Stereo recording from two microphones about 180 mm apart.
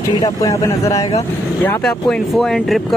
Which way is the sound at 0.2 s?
20° left (ahead or behind).